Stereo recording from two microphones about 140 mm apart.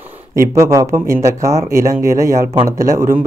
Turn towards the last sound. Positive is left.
turn(degrees=-20)  # may be behind; listen again after turning